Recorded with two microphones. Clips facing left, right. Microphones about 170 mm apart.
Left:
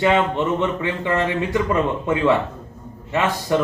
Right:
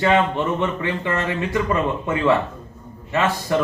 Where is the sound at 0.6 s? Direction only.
15° left (ahead or behind).